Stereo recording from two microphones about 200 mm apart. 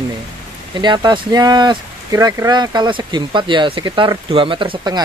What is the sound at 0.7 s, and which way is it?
Speech, 20° right (ahead or behind).